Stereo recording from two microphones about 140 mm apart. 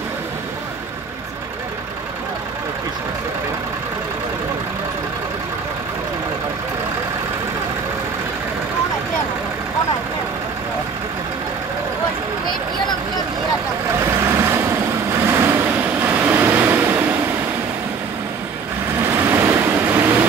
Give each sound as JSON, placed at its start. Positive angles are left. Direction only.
{"t": 14.3, "sound": "vehicle", "side_deg": -20}
{"t": 19.1, "sound": "vehicle", "side_deg": -15}